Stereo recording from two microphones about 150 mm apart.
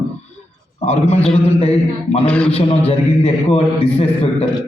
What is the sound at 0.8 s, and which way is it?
A man's voice, 45° left (ahead or behind).